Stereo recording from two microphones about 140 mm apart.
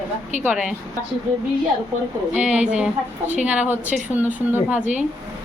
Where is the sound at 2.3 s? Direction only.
10° right (ahead or behind).